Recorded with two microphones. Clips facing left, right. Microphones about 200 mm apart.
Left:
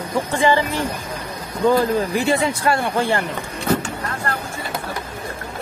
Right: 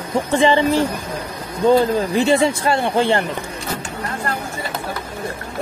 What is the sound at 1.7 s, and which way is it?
Speech, 25° right (ahead or behind).